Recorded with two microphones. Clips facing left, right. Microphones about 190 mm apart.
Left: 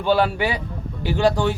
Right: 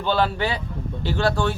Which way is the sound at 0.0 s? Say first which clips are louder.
Left 3 dB; 10° left (ahead or behind).